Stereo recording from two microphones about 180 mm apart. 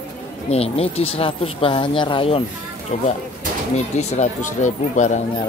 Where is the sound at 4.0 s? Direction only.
40° left (ahead or behind).